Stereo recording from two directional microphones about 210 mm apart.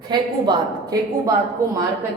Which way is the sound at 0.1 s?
20° right (ahead or behind).